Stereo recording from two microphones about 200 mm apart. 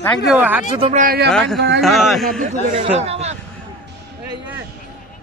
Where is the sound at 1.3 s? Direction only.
Centre (ahead or behind).